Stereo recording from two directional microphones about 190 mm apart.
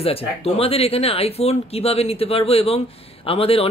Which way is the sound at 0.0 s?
30° left (ahead or behind).